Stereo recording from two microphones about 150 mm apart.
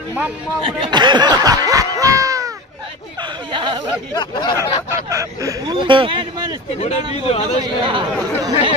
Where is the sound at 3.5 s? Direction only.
30° right (ahead or behind).